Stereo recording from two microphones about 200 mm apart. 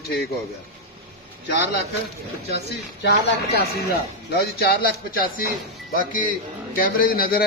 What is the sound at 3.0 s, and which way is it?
Speech, 50° left (ahead or behind).